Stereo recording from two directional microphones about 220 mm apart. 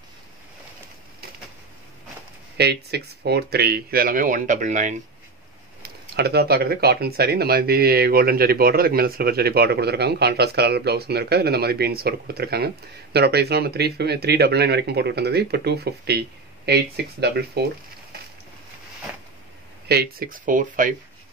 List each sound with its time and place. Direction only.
2.5 s speech: 50° right (ahead or behind)
5.8 s speech: 45° right (ahead or behind)
19.9 s speech: 45° right (ahead or behind)